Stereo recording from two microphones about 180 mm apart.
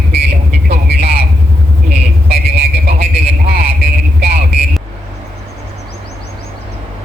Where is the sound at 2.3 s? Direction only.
60° right (ahead or behind).